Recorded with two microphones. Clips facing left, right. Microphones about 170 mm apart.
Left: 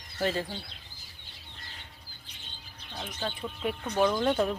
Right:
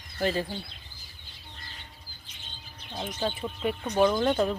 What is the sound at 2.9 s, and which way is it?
Speech, 15° right (ahead or behind).